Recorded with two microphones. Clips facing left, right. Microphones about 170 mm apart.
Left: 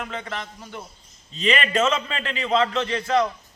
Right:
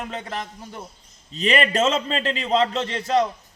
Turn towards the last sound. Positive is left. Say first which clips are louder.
# even
turn(degrees=-35)  # may be behind; listen again after turning